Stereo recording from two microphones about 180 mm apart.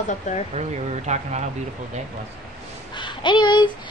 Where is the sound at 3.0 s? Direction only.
25° left (ahead or behind).